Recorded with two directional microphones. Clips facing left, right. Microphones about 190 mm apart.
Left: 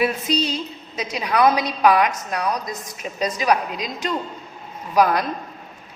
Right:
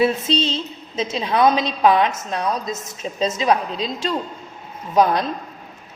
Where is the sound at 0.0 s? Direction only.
25° right (ahead or behind).